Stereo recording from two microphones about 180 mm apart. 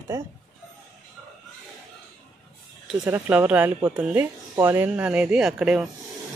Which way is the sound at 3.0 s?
15° right (ahead or behind).